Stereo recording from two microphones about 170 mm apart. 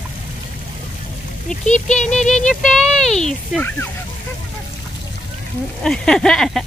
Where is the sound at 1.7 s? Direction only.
45° left (ahead or behind).